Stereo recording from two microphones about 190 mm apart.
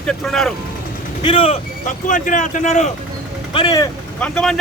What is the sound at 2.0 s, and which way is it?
Speech, 40° left (ahead or behind).